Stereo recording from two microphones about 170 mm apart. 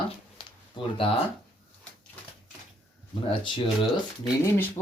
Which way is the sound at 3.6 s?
Centre (ahead or behind).